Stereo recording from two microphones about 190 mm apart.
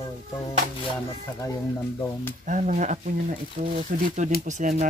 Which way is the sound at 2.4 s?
40° right (ahead or behind).